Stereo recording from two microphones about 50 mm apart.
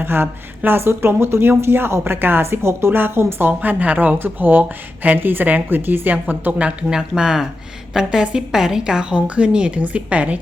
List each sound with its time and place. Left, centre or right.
0.0 s a woman's voice: right
7.2 s a woman's voice: centre; by 10.4 s right